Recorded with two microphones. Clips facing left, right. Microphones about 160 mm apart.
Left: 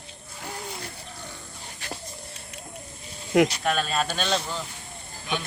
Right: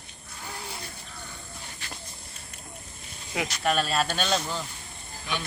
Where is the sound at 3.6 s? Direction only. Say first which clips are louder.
Even; 5° right (ahead or behind).